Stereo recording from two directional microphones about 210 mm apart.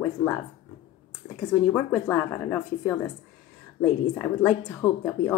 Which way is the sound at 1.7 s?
5° left (ahead or behind).